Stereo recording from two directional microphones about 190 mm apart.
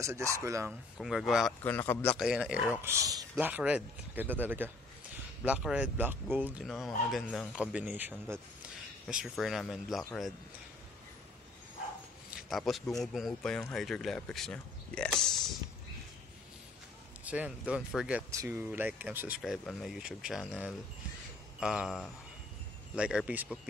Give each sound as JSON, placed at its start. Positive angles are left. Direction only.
{"t": 0.0, "sound": "speech", "side_deg": -15}
{"t": 0.7, "sound": "speech", "side_deg": 0}
{"t": 1.6, "sound": "a man's voice", "side_deg": 10}
{"t": 2.1, "sound": "speech", "side_deg": -5}
{"t": 12.4, "sound": "speech", "side_deg": 0}
{"t": 17.2, "sound": "speech", "side_deg": -5}